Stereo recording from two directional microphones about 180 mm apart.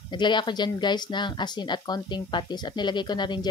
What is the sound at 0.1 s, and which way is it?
Speech, 25° left (ahead or behind).